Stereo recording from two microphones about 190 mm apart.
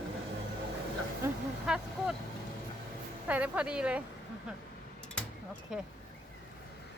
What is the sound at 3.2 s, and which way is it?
Speech, 5° right (ahead or behind).